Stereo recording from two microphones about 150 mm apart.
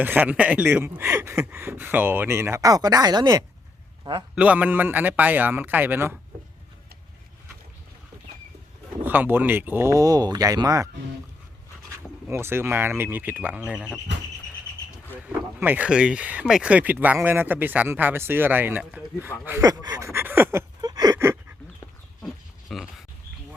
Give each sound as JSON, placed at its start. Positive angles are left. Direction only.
{"t": 0.0, "sound": "speech", "side_deg": -10}
{"t": 4.4, "sound": "speech", "side_deg": -10}
{"t": 9.0, "sound": "speech", "side_deg": -15}
{"t": 12.3, "sound": "speech", "side_deg": -15}
{"t": 15.3, "sound": "speech", "side_deg": -10}
{"t": 22.7, "sound": "pig", "side_deg": 0}